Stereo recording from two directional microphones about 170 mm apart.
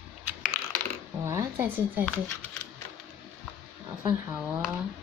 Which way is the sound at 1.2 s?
15° right (ahead or behind).